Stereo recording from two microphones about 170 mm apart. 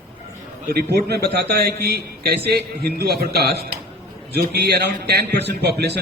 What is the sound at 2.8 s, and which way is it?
A man's voice, 65° right (ahead or behind).